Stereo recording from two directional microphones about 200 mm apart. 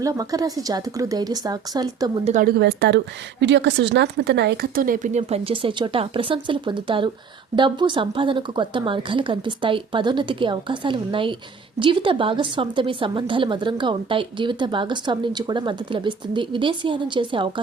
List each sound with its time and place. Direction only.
0.0 s speech: 15° right (ahead or behind)
2.2 s a woman's voice: 40° right (ahead or behind); by 17.5 s 25° right (ahead or behind)